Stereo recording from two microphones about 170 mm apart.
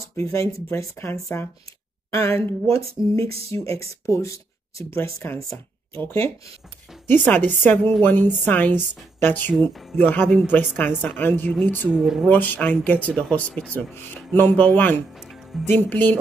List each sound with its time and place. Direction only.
0.0 s speech: 15° left (ahead or behind)
3.3 s speech: 35° right (ahead or behind)
4.1 s speech: 20° left (ahead or behind)
10.2 s speech: centre (ahead or behind)
10.5 s speech: 10° left (ahead or behind)
11.9 s speech: centre (ahead or behind)
12.3 s speech: 10° left (ahead or behind)
15.1 s music: centre (ahead or behind)
15.6 s speech: 10° left (ahead or behind)